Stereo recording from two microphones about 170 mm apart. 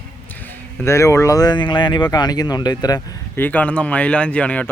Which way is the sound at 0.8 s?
15° left (ahead or behind).